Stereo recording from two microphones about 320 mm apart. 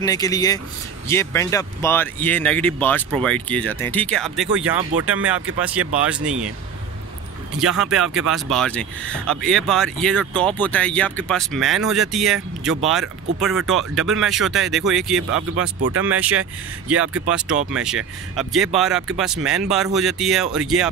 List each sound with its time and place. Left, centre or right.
0.0 s speech: centre
4.9 s speech: right
5.6 s speech: centre
7.5 s speech: centre